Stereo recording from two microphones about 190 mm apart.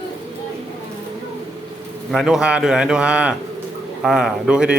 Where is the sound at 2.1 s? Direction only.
Centre (ahead or behind).